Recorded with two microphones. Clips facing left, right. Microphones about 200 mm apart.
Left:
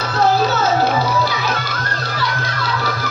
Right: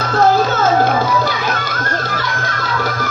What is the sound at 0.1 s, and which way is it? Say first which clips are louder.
Music: right 3 dB; 50° right (ahead or behind).